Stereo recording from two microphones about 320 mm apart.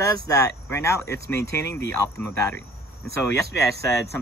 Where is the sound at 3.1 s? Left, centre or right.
Right.